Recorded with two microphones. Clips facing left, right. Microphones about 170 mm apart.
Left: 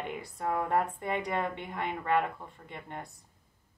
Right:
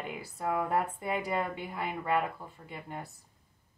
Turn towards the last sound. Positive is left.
turn(degrees=-5)  # may be behind; listen again after turning